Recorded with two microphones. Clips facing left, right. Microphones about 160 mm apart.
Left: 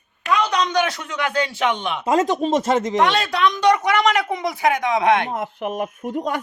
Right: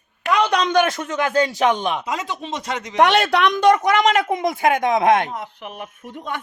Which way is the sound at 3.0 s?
65° right (ahead or behind).